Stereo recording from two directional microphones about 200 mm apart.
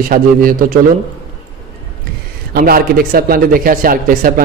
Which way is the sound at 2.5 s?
50° right (ahead or behind).